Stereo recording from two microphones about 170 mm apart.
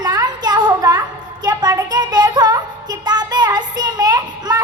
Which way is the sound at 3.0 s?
25° right (ahead or behind).